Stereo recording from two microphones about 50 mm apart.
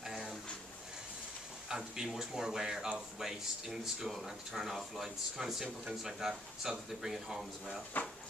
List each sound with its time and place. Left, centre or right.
0.0 s a sound: centre
1.7 s speech: centre
8.0 s speech: left